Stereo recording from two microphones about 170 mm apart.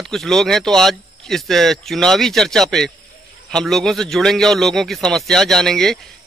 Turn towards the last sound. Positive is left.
turn(degrees=5)  # may be behind; listen again after turning